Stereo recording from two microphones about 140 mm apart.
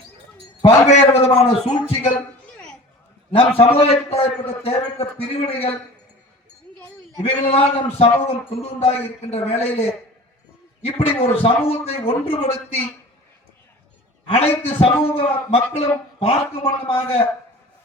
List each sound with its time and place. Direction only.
0.6 s a man's voice: 50° left (ahead or behind)
3.3 s a man's voice: 40° left (ahead or behind)
7.2 s a man's voice: 45° left (ahead or behind)
14.3 s a man's voice: 45° left (ahead or behind)